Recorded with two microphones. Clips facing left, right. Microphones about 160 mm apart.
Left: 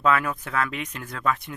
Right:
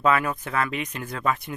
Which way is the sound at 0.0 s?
5° right (ahead or behind).